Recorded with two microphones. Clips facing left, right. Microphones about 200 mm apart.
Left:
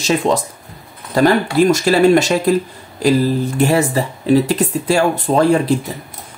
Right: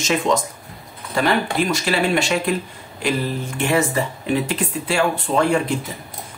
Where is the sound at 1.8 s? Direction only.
40° left (ahead or behind).